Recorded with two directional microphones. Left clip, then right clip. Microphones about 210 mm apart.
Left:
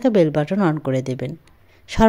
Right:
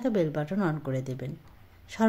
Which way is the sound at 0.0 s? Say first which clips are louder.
Left 11 dB; 40° left (ahead or behind).